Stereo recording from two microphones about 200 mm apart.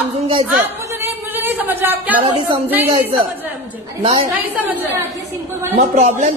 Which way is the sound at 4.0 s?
25° right (ahead or behind).